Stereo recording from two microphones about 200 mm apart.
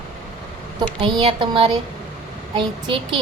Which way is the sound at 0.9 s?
25° right (ahead or behind).